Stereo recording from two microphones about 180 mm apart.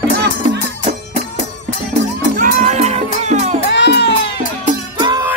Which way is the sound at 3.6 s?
70° left (ahead or behind).